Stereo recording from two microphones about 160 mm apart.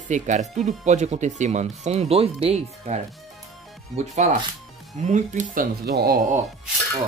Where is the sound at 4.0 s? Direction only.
45° right (ahead or behind).